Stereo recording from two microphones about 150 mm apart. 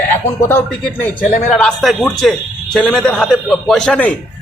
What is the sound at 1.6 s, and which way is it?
A man's voice, 5° left (ahead or behind).